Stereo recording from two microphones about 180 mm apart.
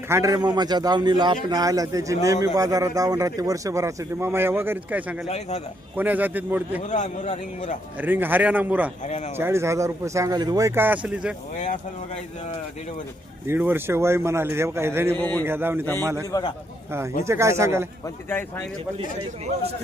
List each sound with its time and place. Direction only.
0.1 s a man's voice: 20° right (ahead or behind)
5.3 s speech: 35° left (ahead or behind)
6.0 s a man's voice: 10° right (ahead or behind)
6.8 s a man's voice: 45° left (ahead or behind)
8.0 s a man's voice: 10° right (ahead or behind)
9.0 s speech: 40° left (ahead or behind)
9.4 s a man's voice: 15° right (ahead or behind)
13.5 s a man's voice: 10° right (ahead or behind)
15.1 s a man's voice: 10° left (ahead or behind)
15.4 s a man's voice: 10° right (ahead or behind)
16.3 s a man's voice: 30° left (ahead or behind)
17.2 s a man's voice: 15° right (ahead or behind)
18.0 s a man's voice: 15° left (ahead or behind)